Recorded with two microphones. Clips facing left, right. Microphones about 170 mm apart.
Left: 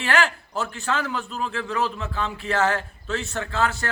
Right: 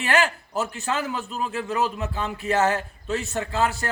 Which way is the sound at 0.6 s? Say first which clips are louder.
Even; 15° right (ahead or behind).